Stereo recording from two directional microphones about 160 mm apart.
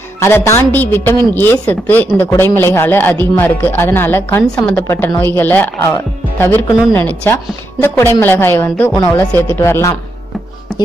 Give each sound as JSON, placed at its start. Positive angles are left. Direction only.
{"t": 0.2, "sound": "a woman's voice", "side_deg": 15}